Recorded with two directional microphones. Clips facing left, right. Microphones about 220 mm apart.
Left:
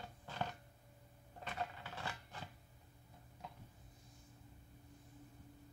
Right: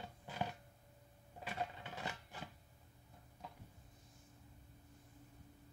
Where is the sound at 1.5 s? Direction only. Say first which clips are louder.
Right 1 dB; 10° right (ahead or behind).